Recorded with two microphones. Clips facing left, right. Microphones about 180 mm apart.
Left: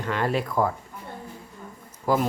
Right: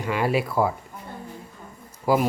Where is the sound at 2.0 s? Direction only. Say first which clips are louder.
Right 2 dB; 10° right (ahead or behind).